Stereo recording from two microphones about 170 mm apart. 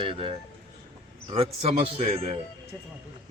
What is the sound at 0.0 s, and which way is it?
A man's voice, 30° right (ahead or behind).